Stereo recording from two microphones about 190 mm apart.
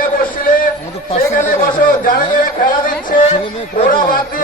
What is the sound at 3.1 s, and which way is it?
Speech, 35° left (ahead or behind).